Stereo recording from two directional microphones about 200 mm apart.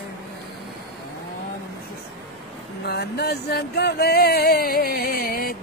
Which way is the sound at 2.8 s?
55° left (ahead or behind).